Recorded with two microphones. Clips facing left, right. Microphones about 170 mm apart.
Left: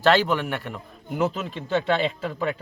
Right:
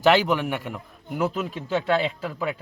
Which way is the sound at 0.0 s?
15° right (ahead or behind).